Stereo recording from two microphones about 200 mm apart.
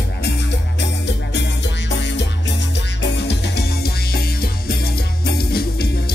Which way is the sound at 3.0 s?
55° left (ahead or behind).